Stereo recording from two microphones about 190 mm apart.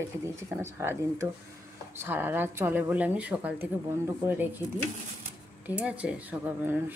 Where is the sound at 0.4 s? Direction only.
15° right (ahead or behind).